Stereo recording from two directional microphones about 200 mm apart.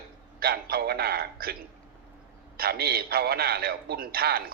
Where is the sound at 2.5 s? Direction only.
50° right (ahead or behind).